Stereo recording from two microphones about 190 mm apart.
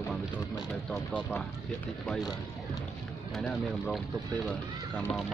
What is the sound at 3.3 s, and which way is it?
Speech, centre (ahead or behind).